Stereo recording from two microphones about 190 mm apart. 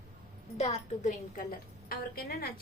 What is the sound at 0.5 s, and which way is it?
A woman's voice, 35° left (ahead or behind).